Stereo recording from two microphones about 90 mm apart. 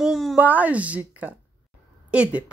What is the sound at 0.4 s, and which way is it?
A woman's voice, 15° right (ahead or behind).